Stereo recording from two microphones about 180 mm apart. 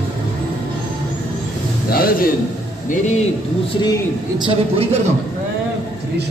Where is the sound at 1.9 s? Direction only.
55° left (ahead or behind).